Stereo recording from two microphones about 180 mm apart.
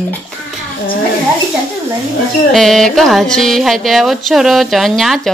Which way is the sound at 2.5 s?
Centre (ahead or behind).